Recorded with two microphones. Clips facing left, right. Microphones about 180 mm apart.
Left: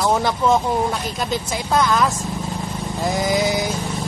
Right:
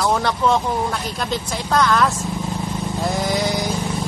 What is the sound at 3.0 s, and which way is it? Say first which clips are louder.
Sheep: left 2 dB; centre (ahead or behind).